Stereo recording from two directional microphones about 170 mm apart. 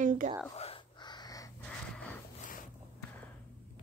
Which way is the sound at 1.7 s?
5° left (ahead or behind).